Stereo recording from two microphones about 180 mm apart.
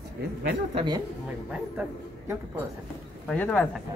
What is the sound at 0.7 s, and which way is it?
Speech, 25° right (ahead or behind).